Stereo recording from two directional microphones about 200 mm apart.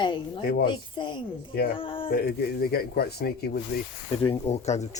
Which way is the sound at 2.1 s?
50° left (ahead or behind).